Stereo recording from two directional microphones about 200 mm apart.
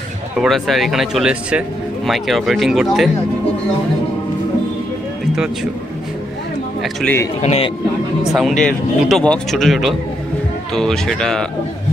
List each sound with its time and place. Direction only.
0.4 s speech: centre (ahead or behind)
6.8 s speech: centre (ahead or behind)
7.4 s speech: 30° left (ahead or behind)
8.3 s speech: centre (ahead or behind)